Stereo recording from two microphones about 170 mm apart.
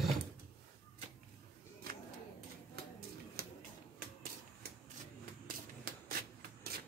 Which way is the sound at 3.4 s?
60° right (ahead or behind).